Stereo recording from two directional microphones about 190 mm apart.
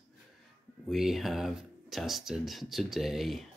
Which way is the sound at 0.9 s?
Centre (ahead or behind).